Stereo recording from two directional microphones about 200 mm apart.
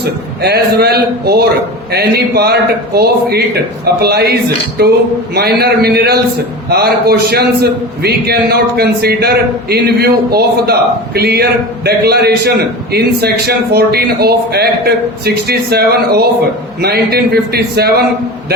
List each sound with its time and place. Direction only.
0.0 s a man's voice: 55° right (ahead or behind)